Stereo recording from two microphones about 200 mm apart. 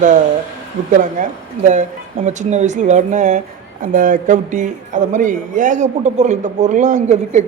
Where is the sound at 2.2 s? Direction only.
35° right (ahead or behind).